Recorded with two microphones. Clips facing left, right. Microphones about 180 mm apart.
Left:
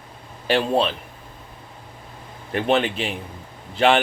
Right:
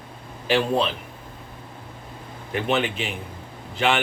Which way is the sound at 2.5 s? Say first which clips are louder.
Left 3 dB; 35° left (ahead or behind).